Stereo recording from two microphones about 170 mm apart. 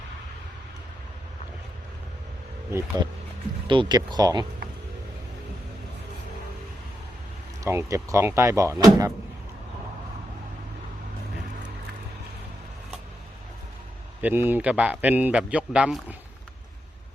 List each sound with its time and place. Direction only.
3.7 s speech: 25° right (ahead or behind)
7.6 s speech: 15° right (ahead or behind)
14.2 s speech: 10° right (ahead or behind)